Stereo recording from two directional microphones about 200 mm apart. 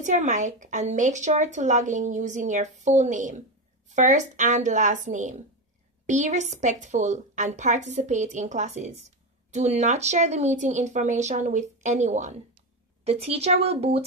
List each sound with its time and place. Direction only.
0.0 s speech: 40° right (ahead or behind)